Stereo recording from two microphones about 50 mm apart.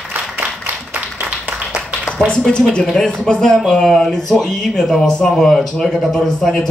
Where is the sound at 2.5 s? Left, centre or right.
Centre.